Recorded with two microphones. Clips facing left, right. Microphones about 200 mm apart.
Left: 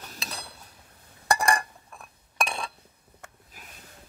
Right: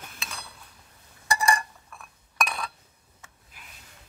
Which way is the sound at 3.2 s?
45° left (ahead or behind).